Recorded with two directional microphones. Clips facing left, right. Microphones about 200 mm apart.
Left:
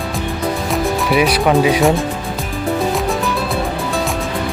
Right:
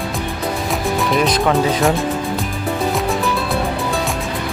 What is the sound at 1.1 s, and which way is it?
Speech, 10° left (ahead or behind).